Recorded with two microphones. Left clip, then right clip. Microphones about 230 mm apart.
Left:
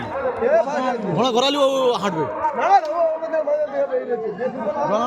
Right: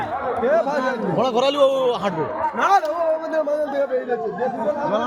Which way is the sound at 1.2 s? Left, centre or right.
Left.